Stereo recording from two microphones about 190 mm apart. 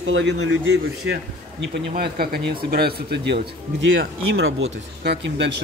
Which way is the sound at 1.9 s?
55° right (ahead or behind).